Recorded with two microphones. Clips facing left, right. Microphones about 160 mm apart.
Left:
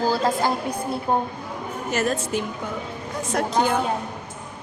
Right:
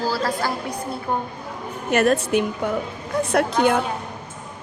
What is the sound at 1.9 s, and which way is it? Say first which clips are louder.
Speech: right 6 dB; 65° right (ahead or behind).